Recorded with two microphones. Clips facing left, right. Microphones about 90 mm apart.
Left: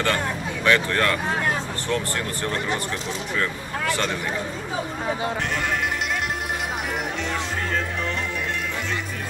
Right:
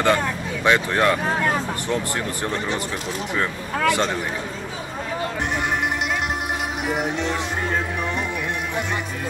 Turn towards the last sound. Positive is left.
turn(degrees=-20)  # may be behind; listen again after turning